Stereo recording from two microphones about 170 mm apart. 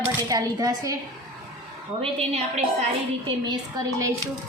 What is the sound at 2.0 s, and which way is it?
Speech, 35° right (ahead or behind).